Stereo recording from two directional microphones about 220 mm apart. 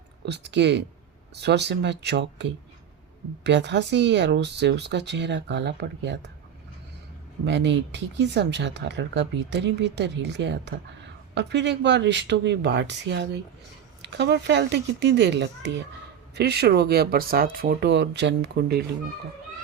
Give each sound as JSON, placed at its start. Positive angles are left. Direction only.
{"t": 0.3, "sound": "speech", "side_deg": -50}
{"t": 7.4, "sound": "speech", "side_deg": -55}